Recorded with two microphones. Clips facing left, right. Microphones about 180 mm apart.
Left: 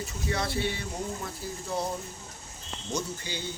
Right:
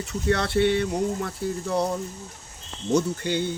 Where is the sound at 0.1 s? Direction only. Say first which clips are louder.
Right 10 dB; 65° right (ahead or behind).